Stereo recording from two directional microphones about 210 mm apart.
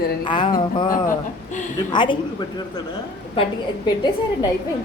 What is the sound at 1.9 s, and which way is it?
Speech, 20° left (ahead or behind).